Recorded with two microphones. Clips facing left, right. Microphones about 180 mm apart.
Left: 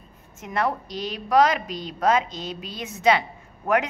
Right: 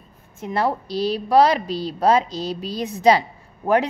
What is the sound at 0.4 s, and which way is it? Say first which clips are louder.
A woman's voice: right 3 dB; 30° right (ahead or behind).